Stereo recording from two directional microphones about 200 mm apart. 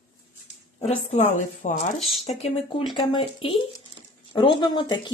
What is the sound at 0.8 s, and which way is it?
A woman's voice, 35° left (ahead or behind).